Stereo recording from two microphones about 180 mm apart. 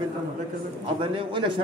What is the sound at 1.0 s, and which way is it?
Speech, 30° right (ahead or behind).